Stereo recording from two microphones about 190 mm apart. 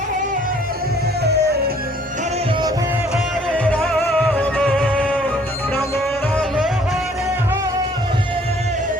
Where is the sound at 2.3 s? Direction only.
25° right (ahead or behind).